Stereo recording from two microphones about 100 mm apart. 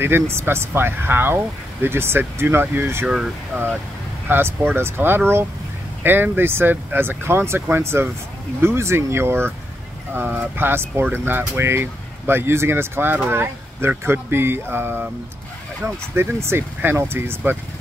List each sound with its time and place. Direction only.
0.0 s speech: 25° right (ahead or behind)
4.3 s speech: 20° right (ahead or behind)